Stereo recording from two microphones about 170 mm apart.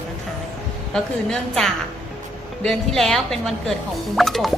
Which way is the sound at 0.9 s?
5° left (ahead or behind).